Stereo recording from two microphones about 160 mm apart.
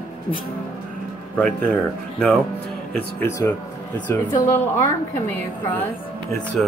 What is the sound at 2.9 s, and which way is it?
Speech, 15° left (ahead or behind).